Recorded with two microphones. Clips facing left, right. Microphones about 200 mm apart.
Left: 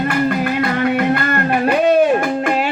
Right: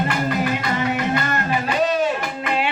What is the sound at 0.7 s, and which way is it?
Music, 55° left (ahead or behind).